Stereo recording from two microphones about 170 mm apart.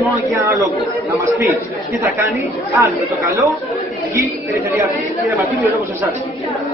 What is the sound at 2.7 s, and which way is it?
Speech, 20° right (ahead or behind).